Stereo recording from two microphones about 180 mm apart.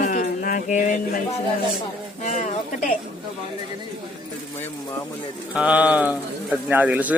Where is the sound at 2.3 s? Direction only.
45° left (ahead or behind).